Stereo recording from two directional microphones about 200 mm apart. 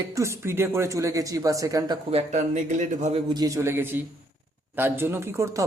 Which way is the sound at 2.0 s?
35° right (ahead or behind).